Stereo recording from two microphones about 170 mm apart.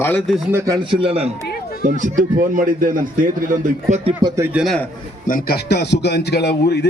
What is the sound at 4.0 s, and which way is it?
Speech, 25° right (ahead or behind).